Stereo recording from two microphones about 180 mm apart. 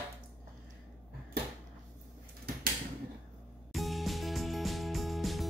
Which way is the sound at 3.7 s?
Centre (ahead or behind).